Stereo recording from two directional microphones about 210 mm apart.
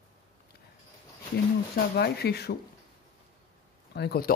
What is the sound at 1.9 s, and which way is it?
Speech, 50° left (ahead or behind).